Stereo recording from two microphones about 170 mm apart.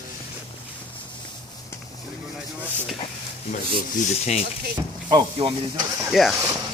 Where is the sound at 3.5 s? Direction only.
45° left (ahead or behind).